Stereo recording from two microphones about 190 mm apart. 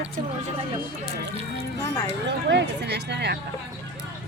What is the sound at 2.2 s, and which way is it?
Speech, 65° right (ahead or behind).